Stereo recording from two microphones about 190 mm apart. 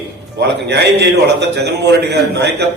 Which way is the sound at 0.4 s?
60° right (ahead or behind).